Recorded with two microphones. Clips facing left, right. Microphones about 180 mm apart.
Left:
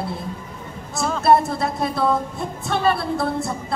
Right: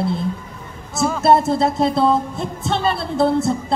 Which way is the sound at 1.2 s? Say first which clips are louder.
Right 2 dB; 25° right (ahead or behind).